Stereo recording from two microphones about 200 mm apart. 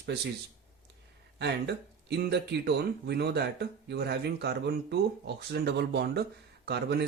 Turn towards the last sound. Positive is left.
turn(degrees=-55)  # may be behind; listen again after turning